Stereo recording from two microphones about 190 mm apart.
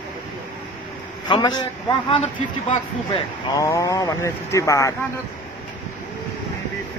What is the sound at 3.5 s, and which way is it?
Speech, 15° left (ahead or behind).